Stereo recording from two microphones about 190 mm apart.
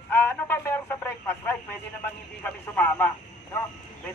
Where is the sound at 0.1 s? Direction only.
10° left (ahead or behind).